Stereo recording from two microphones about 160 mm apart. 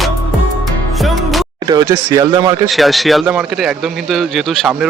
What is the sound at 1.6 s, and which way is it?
Speech, 25° right (ahead or behind).